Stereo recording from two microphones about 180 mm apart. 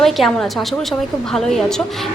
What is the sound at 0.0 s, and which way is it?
A woman's voice, centre (ahead or behind).